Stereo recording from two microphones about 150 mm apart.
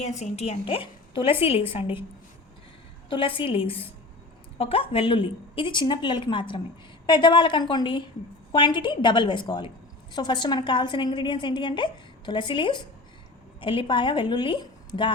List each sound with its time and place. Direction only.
0.2 s a woman's voice: 45° left (ahead or behind)
3.1 s a woman's voice: 35° left (ahead or behind)